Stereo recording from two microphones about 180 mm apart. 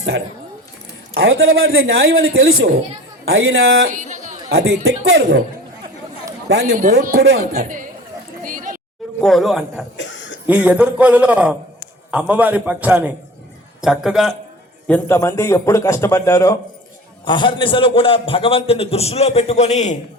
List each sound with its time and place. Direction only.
1.1 s a man's voice: 65° right (ahead or behind)
3.9 s chatter: 45° right (ahead or behind)
4.4 s a man's voice: 70° right (ahead or behind)
6.5 s a man's voice: 65° right (ahead or behind); by 7.9 s 50° right (ahead or behind)
8.4 s a sound: 50° right (ahead or behind)
9.2 s a man's voice: centre (ahead or behind)
10.0 s a sound: 90° left
10.4 s a man's voice: 10° right (ahead or behind)
14.8 s a man's voice: 10° left (ahead or behind); by 20.0 s 40° left (ahead or behind)